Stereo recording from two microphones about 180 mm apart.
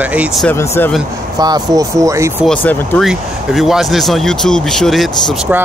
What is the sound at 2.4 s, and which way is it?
Speech, 10° left (ahead or behind).